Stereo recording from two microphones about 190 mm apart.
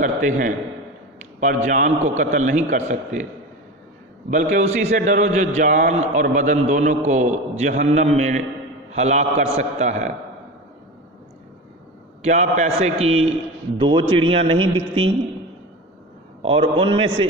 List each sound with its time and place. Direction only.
0.0 s a man's voice: 40° right (ahead or behind)
4.3 s a man's voice: 40° right (ahead or behind)
12.2 s a man's voice: 40° right (ahead or behind)
16.4 s a man's voice: 30° right (ahead or behind)